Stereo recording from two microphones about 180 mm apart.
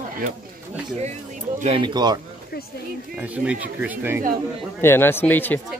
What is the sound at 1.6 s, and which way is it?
Speech, 30° right (ahead or behind).